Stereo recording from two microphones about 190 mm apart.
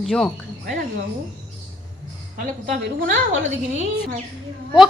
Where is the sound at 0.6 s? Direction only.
45° right (ahead or behind).